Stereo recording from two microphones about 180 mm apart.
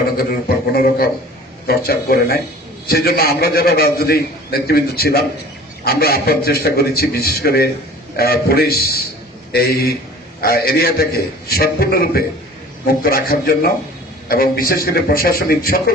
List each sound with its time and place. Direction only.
0.2 s a man's voice: 60° left (ahead or behind)